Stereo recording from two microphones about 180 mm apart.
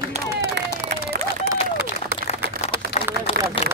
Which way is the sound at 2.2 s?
35° left (ahead or behind).